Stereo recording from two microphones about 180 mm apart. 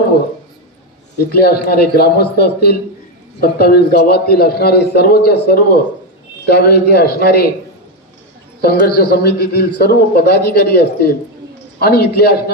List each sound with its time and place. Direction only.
1.3 s a man's voice: 60° left (ahead or behind)
8.6 s a man's voice: 60° left (ahead or behind)